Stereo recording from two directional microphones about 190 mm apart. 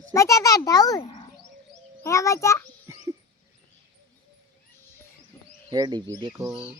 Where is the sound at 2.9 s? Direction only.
15° right (ahead or behind).